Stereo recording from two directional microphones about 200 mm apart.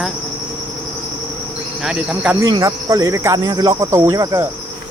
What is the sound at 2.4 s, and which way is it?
Cricket, 20° right (ahead or behind).